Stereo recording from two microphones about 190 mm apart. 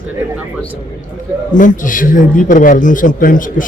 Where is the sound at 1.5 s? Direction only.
45° left (ahead or behind).